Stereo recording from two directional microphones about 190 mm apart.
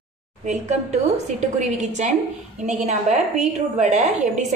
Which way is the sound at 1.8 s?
35° right (ahead or behind).